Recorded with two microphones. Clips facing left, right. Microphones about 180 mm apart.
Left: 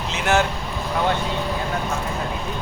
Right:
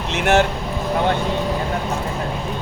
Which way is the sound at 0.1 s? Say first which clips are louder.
Right 4 dB; 65° right (ahead or behind).